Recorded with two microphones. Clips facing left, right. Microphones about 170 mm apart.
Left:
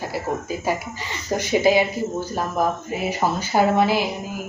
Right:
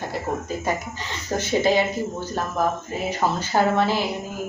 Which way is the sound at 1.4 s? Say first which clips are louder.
Left 2 dB; 10° left (ahead or behind).